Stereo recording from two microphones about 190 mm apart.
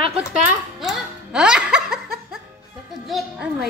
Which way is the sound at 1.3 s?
5° right (ahead or behind).